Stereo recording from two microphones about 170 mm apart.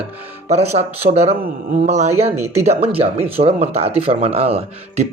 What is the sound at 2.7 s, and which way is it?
Speech, 35° right (ahead or behind).